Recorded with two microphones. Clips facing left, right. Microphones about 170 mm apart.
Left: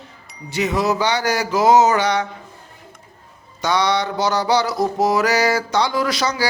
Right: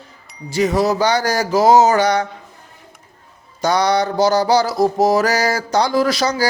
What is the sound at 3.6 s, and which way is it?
Music, 40° right (ahead or behind).